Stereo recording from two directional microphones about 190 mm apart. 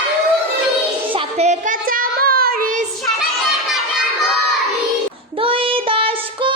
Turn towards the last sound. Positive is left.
turn(degrees=-30)  # may be behind; listen again after turning